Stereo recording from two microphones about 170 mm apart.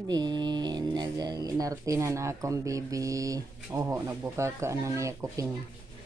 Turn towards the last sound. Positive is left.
turn(degrees=-20)  # may be behind; listen again after turning